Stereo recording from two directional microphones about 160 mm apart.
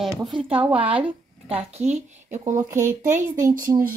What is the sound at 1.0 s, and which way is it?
A woman's voice, 40° right (ahead or behind).